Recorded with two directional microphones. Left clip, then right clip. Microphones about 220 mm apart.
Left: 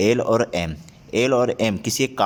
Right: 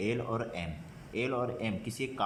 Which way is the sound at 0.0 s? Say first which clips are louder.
Left 16 dB; 50° left (ahead or behind).